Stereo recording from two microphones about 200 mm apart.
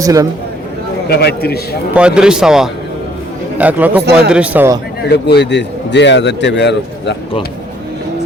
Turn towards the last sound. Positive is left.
turn(degrees=60)  # may be behind; listen again after turning